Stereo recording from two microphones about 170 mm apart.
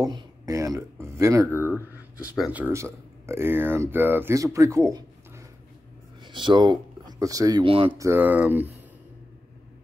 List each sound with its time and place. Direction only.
0.0 s speech: 20° right (ahead or behind)
6.2 s speech: 25° right (ahead or behind)
8.0 s speech: 15° right (ahead or behind)